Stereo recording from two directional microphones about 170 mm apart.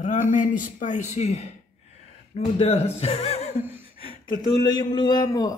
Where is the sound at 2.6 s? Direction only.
35° left (ahead or behind).